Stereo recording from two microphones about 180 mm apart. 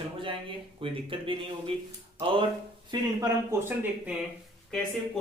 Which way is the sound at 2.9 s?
15° right (ahead or behind).